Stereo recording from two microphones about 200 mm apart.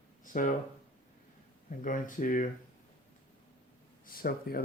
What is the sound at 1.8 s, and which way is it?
Speech, 40° left (ahead or behind).